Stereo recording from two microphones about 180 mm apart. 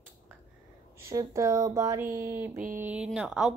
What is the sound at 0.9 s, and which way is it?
Speech, 15° right (ahead or behind).